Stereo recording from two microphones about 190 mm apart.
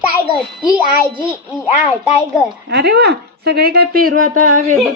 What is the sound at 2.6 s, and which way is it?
Speech, 60° right (ahead or behind).